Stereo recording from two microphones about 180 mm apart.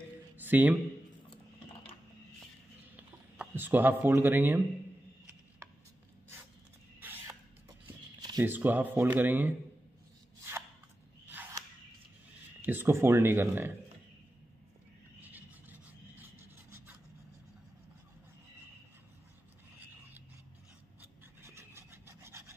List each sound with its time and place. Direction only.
0.4 s speech: 10° right (ahead or behind)
3.0 s speech: 10° right (ahead or behind)
7.0 s a sound: 10° right (ahead or behind)
8.2 s a sound: 20° right (ahead or behind)
8.5 s speech: 10° right (ahead or behind)
11.2 s a sound: 10° right (ahead or behind)
12.6 s speech: 10° right (ahead or behind)
15.3 s rub: 10° right (ahead or behind)
21.0 s filing: 15° right (ahead or behind)